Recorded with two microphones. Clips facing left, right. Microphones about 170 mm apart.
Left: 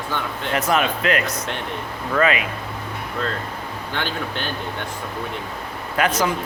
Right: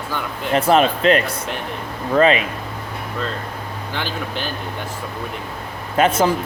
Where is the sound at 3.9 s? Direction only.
5° right (ahead or behind).